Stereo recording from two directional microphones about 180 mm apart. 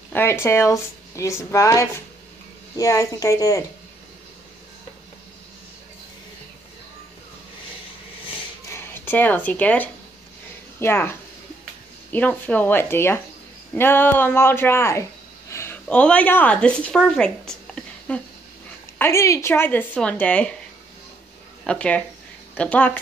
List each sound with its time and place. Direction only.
0.1 s a woman's voice: 15° left (ahead or behind)
8.7 s speech: 10° left (ahead or behind)
21.6 s speech: 5° left (ahead or behind)